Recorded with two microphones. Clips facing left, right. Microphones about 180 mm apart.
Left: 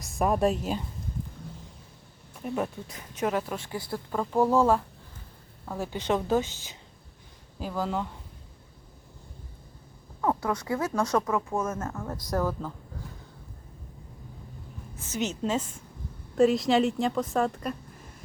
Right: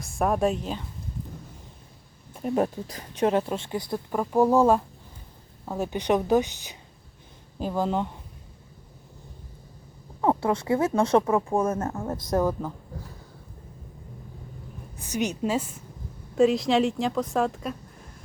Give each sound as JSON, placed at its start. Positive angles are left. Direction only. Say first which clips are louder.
{"t": 0.0, "sound": "a woman's voice", "louder": "right 1 dB", "side_deg": 0}
{"t": 2.4, "sound": "speech", "louder": "right 6 dB", "side_deg": -35}
{"t": 10.2, "sound": "speech", "louder": "right 4 dB", "side_deg": -25}
{"t": 14.9, "sound": "a woman's voice", "louder": "right 3 dB", "side_deg": -15}